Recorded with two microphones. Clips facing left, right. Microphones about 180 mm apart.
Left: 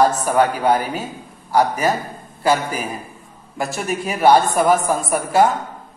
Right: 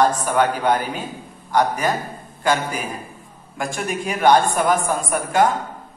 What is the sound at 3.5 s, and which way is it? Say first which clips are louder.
A man's voice: left 2 dB; 5° left (ahead or behind).